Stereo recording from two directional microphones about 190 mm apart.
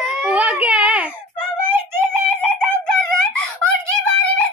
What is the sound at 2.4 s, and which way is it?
Chicken, 5° left (ahead or behind).